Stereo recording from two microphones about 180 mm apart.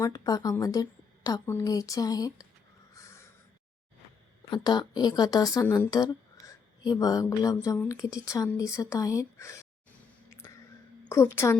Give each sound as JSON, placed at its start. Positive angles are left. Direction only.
{"t": 0.0, "sound": "speech", "side_deg": 20}
{"t": 2.9, "sound": "snort", "side_deg": 15}
{"t": 4.5, "sound": "speech", "side_deg": 25}
{"t": 10.2, "sound": "a sound", "side_deg": 15}
{"t": 11.1, "sound": "a woman's voice", "side_deg": 15}